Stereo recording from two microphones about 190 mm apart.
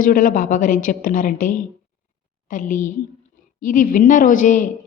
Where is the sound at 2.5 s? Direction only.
45° left (ahead or behind).